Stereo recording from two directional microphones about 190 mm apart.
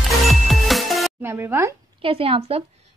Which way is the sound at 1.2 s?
10° right (ahead or behind).